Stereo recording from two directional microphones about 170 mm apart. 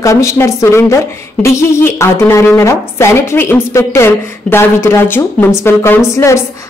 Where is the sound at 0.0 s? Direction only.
15° left (ahead or behind).